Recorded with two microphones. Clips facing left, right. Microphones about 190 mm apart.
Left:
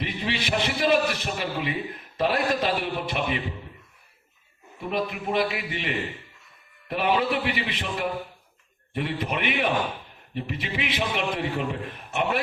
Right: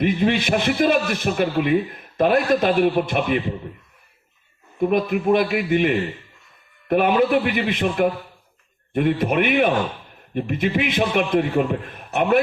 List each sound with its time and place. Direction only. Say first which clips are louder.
0.0 s a man's voice: right 10 dB; 50° right (ahead or behind)
4.8 s a man's voice: right 9 dB; 50° right (ahead or behind)